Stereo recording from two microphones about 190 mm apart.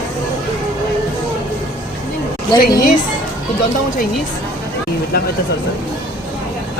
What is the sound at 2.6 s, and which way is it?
Speech, 45° left (ahead or behind).